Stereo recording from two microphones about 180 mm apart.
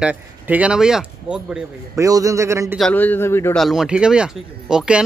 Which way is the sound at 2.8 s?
5° left (ahead or behind).